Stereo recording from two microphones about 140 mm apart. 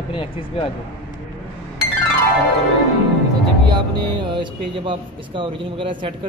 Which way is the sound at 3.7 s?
35° right (ahead or behind).